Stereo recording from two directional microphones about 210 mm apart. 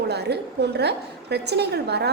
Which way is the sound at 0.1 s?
50° right (ahead or behind).